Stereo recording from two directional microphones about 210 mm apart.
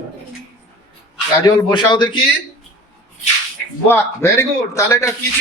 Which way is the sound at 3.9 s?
10° left (ahead or behind).